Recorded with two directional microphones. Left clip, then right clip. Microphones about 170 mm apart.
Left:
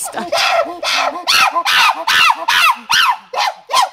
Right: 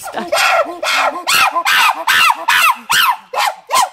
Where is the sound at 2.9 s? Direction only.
10° right (ahead or behind).